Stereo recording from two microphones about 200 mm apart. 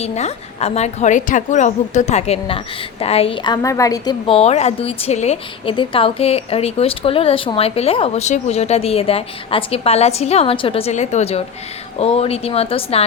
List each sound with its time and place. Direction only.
0.0 s a woman's voice: 30° left (ahead or behind)